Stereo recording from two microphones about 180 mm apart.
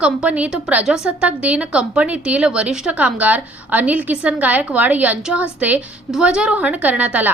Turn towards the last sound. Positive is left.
turn(degrees=-10)  # may be behind; listen again after turning